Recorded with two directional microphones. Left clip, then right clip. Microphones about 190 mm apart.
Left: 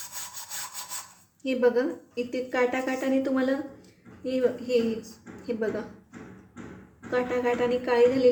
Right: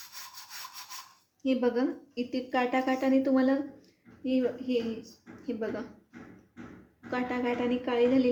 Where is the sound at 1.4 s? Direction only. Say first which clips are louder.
Left 4 dB; 20° right (ahead or behind).